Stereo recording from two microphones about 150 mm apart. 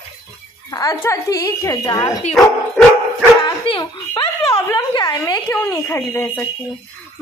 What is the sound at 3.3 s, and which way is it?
Dog, 35° left (ahead or behind).